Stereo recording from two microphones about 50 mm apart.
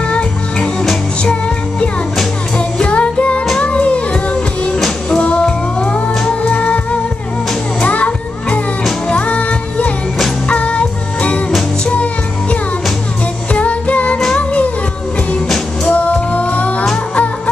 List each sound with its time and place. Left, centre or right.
0.1 s music: left
15.4 s music: centre
15.9 s music: left